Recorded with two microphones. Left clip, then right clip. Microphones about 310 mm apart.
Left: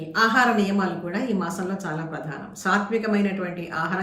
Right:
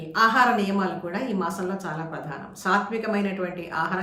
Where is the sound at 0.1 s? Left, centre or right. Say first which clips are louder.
Even; centre.